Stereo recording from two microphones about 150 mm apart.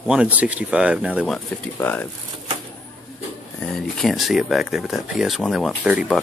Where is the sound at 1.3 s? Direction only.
10° left (ahead or behind).